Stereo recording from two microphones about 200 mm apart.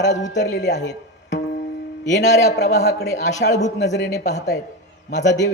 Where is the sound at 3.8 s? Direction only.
60° left (ahead or behind).